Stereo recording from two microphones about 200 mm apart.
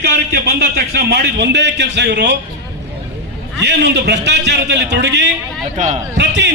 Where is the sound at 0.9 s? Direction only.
60° right (ahead or behind).